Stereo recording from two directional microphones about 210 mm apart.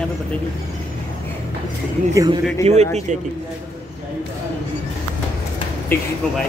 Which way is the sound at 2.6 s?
30° right (ahead or behind).